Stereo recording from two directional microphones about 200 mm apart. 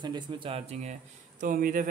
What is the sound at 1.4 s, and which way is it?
Speech, 45° right (ahead or behind).